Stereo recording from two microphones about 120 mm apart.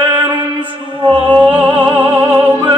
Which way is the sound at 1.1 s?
40° right (ahead or behind).